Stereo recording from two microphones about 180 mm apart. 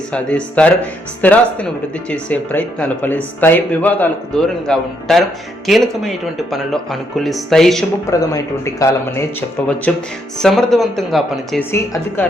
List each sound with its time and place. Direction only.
0.1 s speech: 5° left (ahead or behind)
7.2 s speech: centre (ahead or behind)
8.0 s speech: 20° left (ahead or behind); by 11.6 s centre (ahead or behind)